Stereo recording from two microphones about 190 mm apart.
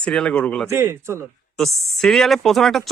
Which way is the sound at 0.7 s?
15° right (ahead or behind).